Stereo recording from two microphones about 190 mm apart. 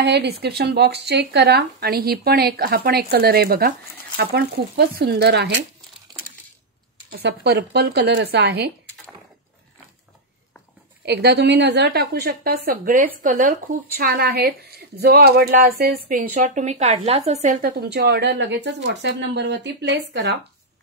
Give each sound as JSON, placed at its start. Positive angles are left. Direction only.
{"t": 0.0, "sound": "speech", "side_deg": -60}
{"t": 7.1, "sound": "speech", "side_deg": -60}
{"t": 11.1, "sound": "speech", "side_deg": -60}
{"t": 17.6, "sound": "speech", "side_deg": -55}